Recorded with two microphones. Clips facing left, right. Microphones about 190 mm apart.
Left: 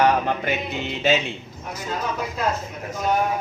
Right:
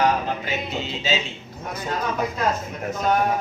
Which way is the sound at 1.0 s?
60° left (ahead or behind).